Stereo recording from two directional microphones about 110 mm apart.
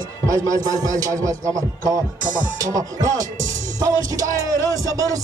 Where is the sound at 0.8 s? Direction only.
30° right (ahead or behind).